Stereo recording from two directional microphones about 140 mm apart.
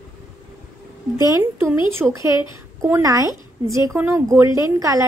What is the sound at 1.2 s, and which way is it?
A woman's voice, 15° right (ahead or behind).